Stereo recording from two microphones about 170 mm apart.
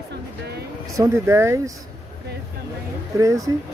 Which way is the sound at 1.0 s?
15° right (ahead or behind).